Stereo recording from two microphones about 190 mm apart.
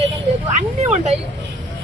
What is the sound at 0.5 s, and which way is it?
Speech, 35° right (ahead or behind).